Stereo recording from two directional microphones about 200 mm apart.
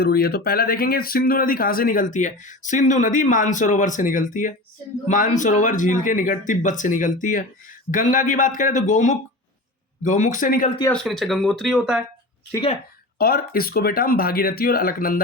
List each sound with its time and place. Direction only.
0.0 s speech: 50° left (ahead or behind)
10.9 s speech: 5° left (ahead or behind)
13.1 s speech: 50° left (ahead or behind)